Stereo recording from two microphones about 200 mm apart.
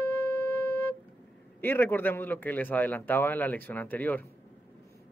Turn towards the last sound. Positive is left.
turn(degrees=10)  # may be behind; listen again after turning